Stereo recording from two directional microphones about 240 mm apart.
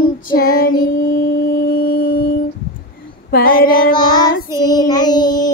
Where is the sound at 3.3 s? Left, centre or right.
Left.